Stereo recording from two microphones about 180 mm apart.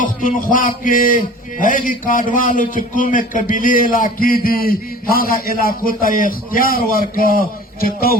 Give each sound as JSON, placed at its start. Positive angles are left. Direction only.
{"t": 0.0, "sound": "a man's voice", "side_deg": 50}